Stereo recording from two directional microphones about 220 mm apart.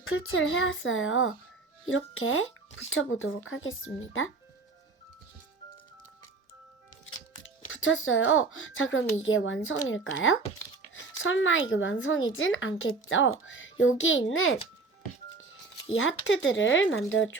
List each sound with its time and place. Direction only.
0.0 s speech: 65° left (ahead or behind)
7.4 s speech: 60° left (ahead or behind)
15.9 s speech: 60° left (ahead or behind)